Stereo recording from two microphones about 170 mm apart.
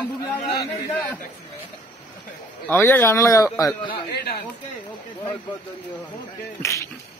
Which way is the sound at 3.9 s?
65° left (ahead or behind).